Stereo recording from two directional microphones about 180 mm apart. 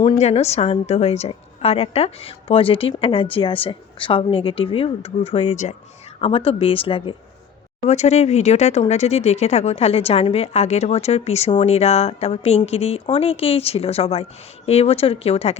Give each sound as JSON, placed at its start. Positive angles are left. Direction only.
{"t": 0.0, "sound": "speech", "side_deg": 30}